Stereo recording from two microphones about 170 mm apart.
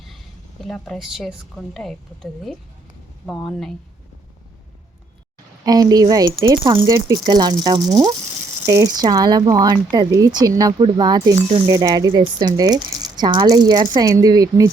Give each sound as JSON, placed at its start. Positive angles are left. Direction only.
{"t": 0.6, "sound": "a woman's voice", "side_deg": 0}
{"t": 5.6, "sound": "speech", "side_deg": -20}